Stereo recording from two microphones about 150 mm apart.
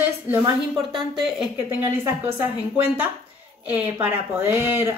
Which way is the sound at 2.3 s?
15° right (ahead or behind).